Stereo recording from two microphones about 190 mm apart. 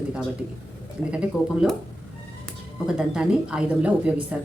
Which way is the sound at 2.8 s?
5° right (ahead or behind).